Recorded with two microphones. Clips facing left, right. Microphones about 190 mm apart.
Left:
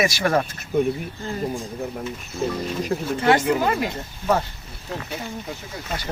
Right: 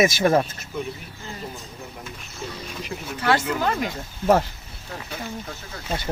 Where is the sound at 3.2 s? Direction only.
20° left (ahead or behind).